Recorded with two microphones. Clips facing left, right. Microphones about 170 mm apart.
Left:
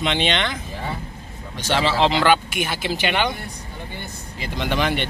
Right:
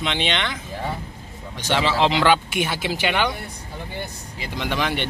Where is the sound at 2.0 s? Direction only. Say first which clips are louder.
Left 1 dB; 20° right (ahead or behind).